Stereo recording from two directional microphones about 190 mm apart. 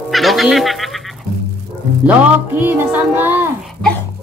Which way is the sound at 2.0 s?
10° right (ahead or behind).